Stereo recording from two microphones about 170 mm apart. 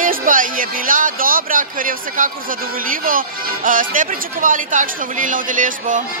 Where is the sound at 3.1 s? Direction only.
55° right (ahead or behind).